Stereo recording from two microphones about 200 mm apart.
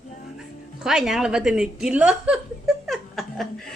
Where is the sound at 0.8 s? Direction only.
5° right (ahead or behind).